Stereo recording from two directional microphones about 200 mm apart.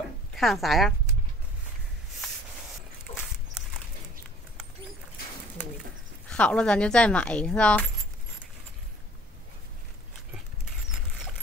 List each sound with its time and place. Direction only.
0.4 s speech: centre (ahead or behind)
3.1 s a sound: 30° left (ahead or behind)
6.2 s speech: 5° left (ahead or behind)